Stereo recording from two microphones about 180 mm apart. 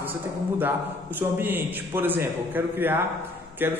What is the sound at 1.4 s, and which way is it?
A man's voice, 10° right (ahead or behind).